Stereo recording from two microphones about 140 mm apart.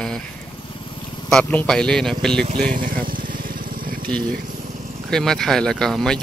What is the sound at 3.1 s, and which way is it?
Vehicle, 90° right.